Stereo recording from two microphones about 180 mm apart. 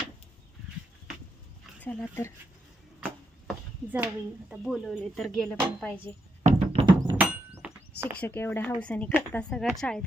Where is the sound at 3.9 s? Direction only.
10° right (ahead or behind).